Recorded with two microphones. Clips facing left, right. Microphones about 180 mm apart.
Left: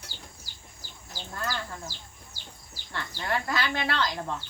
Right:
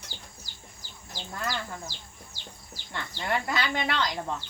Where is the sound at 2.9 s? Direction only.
20° right (ahead or behind).